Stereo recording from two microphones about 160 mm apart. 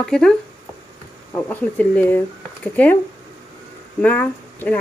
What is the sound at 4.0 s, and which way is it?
Speech, 10° left (ahead or behind).